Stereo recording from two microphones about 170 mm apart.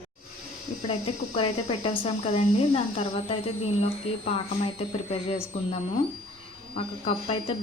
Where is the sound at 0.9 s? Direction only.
35° left (ahead or behind).